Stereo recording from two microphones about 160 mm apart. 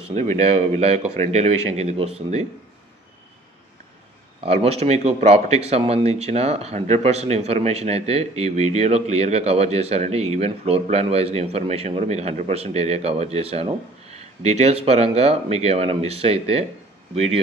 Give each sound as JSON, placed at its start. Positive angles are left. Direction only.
{"t": 0.1, "sound": "speech", "side_deg": -45}
{"t": 4.4, "sound": "speech", "side_deg": -40}